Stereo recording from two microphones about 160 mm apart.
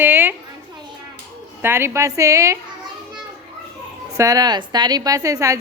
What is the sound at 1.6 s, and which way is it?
A woman's voice, 15° right (ahead or behind).